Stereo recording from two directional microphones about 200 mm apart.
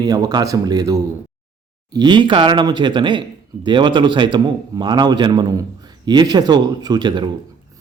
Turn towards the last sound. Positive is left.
turn(degrees=-20)  # may be behind; listen again after turning